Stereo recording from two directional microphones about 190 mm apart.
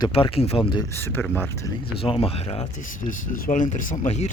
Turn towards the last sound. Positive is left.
turn(degrees=35)  # may be behind; listen again after turning